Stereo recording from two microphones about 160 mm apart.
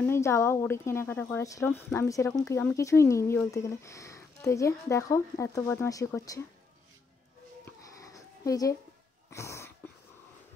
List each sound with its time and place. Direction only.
0.0 s speech: 15° left (ahead or behind)
7.6 s a sound: 20° left (ahead or behind)
9.3 s cough: 15° left (ahead or behind)